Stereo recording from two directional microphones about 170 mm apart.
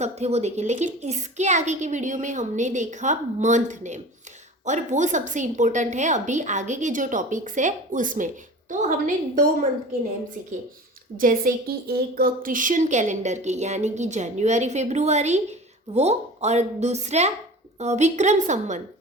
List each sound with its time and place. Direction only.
0.0 s a woman's voice: 40° right (ahead or behind)
11.2 s a woman's voice: 55° right (ahead or behind)